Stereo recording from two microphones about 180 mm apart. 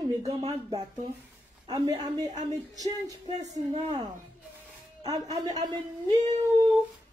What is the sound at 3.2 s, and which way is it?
Music, 35° right (ahead or behind).